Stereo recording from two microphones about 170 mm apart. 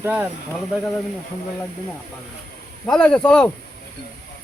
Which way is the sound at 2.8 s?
5° left (ahead or behind).